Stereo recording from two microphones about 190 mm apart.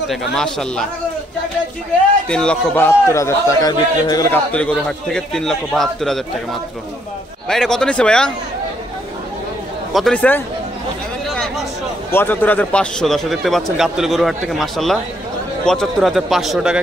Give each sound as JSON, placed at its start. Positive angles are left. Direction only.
{"t": 0.1, "sound": "a man's voice", "side_deg": 0}
{"t": 2.2, "sound": "a man's voice", "side_deg": 5}
{"t": 4.5, "sound": "a man's voice", "side_deg": 5}
{"t": 7.4, "sound": "a man's voice", "side_deg": 5}
{"t": 9.9, "sound": "a man's voice", "side_deg": 5}
{"t": 11.2, "sound": "a sound", "side_deg": 0}
{"t": 12.1, "sound": "a man's voice", "side_deg": 10}